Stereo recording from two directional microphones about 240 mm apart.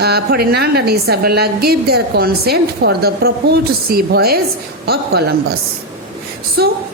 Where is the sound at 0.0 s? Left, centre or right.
Right.